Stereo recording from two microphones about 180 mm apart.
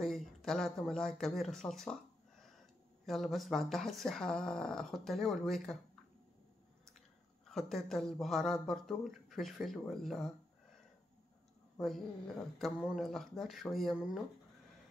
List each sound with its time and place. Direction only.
0.0 s speech: centre (ahead or behind)
7.4 s speech: centre (ahead or behind)
11.7 s a sound: centre (ahead or behind)
12.5 s speech: centre (ahead or behind)